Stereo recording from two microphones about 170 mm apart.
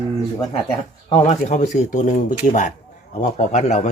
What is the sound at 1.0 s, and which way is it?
A man's voice, 35° left (ahead or behind).